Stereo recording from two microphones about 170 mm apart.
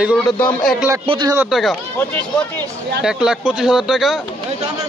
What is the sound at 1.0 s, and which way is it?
Speech, 30° right (ahead or behind).